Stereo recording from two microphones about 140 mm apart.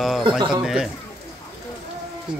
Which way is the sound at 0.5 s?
5° right (ahead or behind).